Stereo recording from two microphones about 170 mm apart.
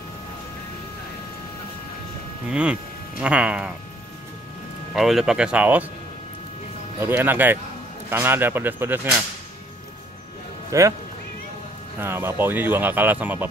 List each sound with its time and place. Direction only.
2.5 s speech: 5° right (ahead or behind)
4.9 s speech: centre (ahead or behind)
7.0 s speech: 10° right (ahead or behind)
10.7 s speech: 20° right (ahead or behind)
12.0 s speech: 15° right (ahead or behind)